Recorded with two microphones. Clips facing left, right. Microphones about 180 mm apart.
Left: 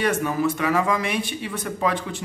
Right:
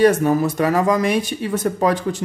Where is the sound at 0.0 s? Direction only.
40° right (ahead or behind).